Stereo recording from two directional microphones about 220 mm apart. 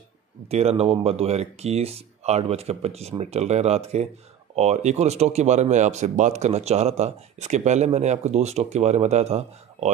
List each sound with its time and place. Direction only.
0.5 s speech: 30° right (ahead or behind)